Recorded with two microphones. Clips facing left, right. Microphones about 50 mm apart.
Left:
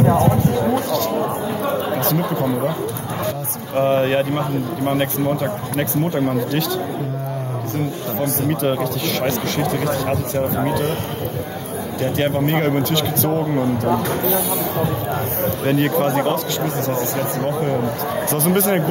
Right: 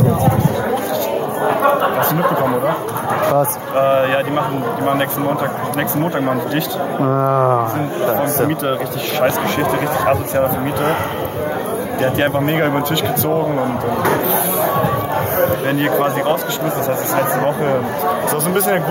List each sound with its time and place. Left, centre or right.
2.1 s speech: right
3.7 s speech: right
4.4 s speech: right
7.3 s speech: right
8.1 s speech: right
12.2 s speech: right
15.6 s speech: centre
17.1 s speech: right
18.3 s speech: centre